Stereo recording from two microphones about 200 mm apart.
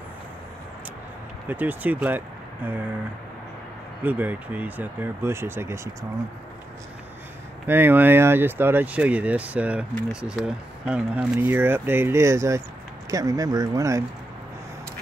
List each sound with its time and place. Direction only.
1.5 s speech: 10° right (ahead or behind)
4.0 s speech: 10° right (ahead or behind)
7.6 s speech: 10° right (ahead or behind)